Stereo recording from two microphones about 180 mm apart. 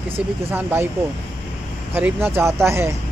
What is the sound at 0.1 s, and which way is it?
Speech, 10° right (ahead or behind).